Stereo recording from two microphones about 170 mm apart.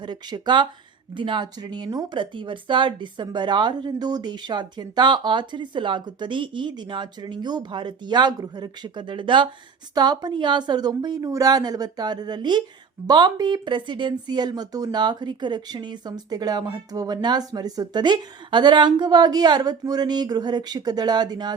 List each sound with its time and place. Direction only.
0.0 s speech: 25° right (ahead or behind)